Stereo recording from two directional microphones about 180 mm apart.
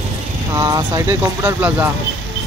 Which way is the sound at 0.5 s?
20° right (ahead or behind).